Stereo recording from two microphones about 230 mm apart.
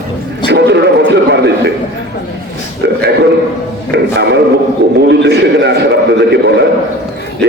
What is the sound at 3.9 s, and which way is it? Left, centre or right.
Music, right.